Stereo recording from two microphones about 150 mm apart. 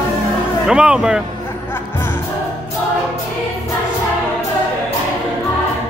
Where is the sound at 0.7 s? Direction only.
5° right (ahead or behind).